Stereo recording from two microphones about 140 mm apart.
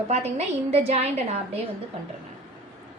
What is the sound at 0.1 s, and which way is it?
A woman's voice, 50° right (ahead or behind).